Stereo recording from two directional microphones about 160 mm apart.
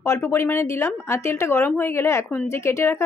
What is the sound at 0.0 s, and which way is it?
Speech, 15° left (ahead or behind).